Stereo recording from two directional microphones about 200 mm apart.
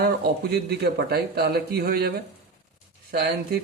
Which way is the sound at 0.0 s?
50° right (ahead or behind).